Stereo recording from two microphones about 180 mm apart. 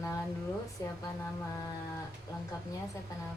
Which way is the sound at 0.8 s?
20° left (ahead or behind).